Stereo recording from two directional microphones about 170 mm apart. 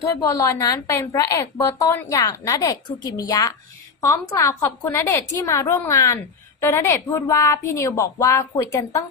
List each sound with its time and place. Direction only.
0.4 s a woman's voice: 20° left (ahead or behind)